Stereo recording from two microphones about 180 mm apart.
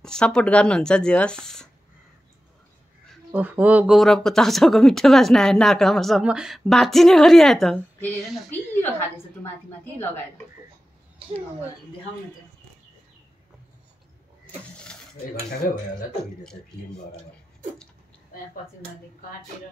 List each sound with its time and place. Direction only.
0.0 s speech: 5° left (ahead or behind)
3.3 s a woman's voice: 10° right (ahead or behind); by 9.5 s 10° left (ahead or behind)